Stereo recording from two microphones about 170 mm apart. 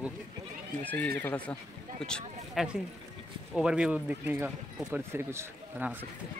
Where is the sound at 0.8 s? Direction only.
10° left (ahead or behind); by 5.9 s 10° right (ahead or behind).